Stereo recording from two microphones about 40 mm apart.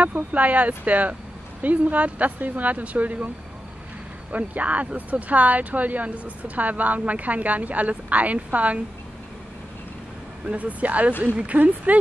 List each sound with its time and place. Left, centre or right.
0.0 s speech: right
4.3 s speech: right
10.4 s speech: right